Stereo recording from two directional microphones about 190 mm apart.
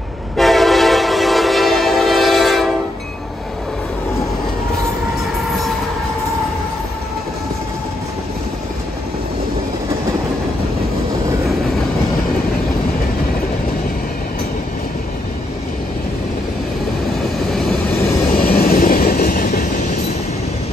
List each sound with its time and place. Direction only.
0.4 s train: centre (ahead or behind)
18.4 s train: 50° left (ahead or behind)